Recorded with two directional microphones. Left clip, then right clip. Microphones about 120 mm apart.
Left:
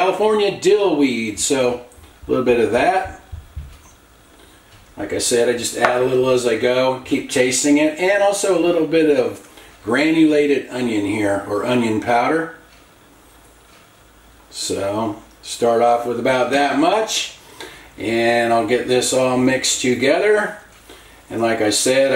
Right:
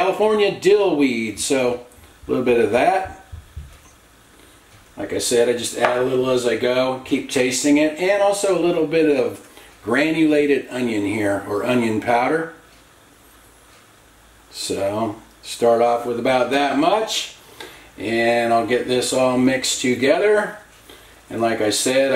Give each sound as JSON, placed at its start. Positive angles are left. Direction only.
{"t": 0.2, "sound": "speech", "side_deg": -15}
{"t": 4.9, "sound": "speech", "side_deg": -10}
{"t": 14.5, "sound": "speech", "side_deg": -15}